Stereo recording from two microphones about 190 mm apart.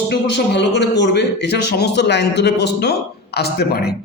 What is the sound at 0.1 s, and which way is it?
A man's voice, 65° left (ahead or behind).